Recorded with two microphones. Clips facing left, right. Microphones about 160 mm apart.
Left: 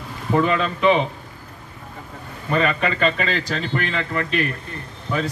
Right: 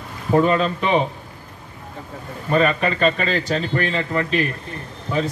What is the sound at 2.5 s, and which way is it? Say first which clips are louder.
A man's voice: right 2 dB; 35° right (ahead or behind).